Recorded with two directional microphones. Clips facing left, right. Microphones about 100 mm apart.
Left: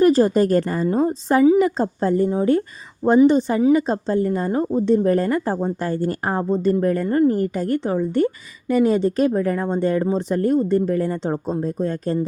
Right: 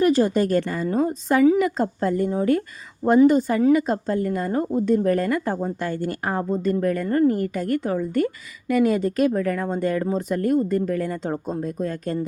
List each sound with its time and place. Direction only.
0.0 s speech: 35° left (ahead or behind)